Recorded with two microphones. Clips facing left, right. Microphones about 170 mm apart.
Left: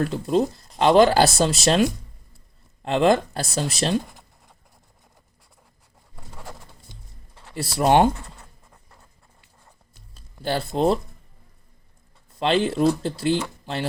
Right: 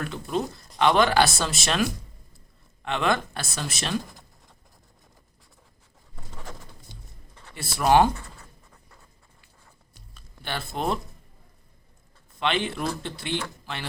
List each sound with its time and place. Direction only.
0.0 s speech: 30° left (ahead or behind)
6.3 s patter: 10° left (ahead or behind)
7.5 s speech: 35° left (ahead or behind)
10.2 s speech: 35° left (ahead or behind)
12.4 s speech: 35° left (ahead or behind)